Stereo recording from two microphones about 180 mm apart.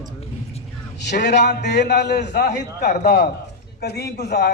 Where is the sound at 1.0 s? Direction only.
70° left (ahead or behind).